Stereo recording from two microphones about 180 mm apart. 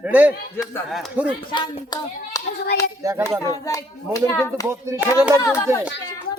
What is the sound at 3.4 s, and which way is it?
Speech, 20° left (ahead or behind).